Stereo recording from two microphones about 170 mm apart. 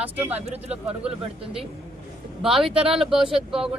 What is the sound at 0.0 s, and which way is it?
Speech, 10° right (ahead or behind).